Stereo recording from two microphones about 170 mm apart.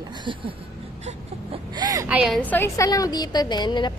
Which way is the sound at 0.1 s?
30° right (ahead or behind).